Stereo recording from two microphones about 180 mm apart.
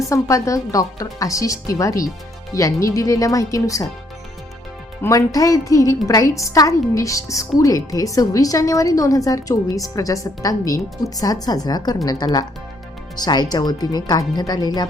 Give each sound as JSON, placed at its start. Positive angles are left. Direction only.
{"t": 0.1, "sound": "speech", "side_deg": 15}
{"t": 5.0, "sound": "a woman's voice", "side_deg": 20}